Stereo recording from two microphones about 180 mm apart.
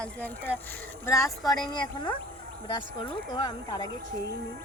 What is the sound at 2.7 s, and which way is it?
Speech, 25° left (ahead or behind).